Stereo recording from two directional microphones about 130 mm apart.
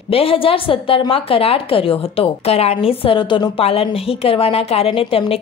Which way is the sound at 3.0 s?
40° left (ahead or behind).